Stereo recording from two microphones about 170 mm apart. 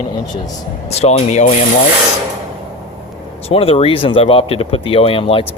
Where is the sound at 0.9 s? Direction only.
40° left (ahead or behind).